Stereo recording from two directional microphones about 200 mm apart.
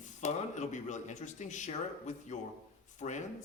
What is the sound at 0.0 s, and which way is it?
Speech, 35° left (ahead or behind).